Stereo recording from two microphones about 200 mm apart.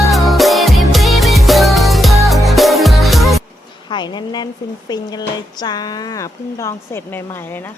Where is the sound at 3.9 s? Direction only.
20° left (ahead or behind).